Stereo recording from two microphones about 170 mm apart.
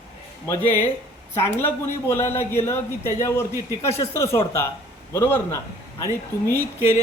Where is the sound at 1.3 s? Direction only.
15° left (ahead or behind).